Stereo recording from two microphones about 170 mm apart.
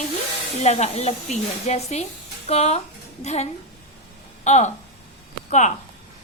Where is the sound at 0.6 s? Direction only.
40° left (ahead or behind).